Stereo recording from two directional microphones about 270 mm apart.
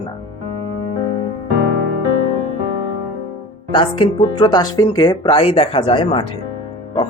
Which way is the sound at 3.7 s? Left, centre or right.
Centre.